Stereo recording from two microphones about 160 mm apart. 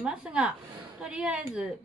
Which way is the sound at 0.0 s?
5° right (ahead or behind).